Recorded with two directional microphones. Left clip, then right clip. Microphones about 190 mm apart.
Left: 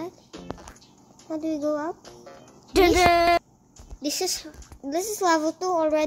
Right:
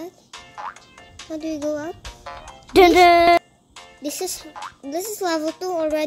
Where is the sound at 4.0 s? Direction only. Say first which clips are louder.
Left 1 dB; 5° left (ahead or behind).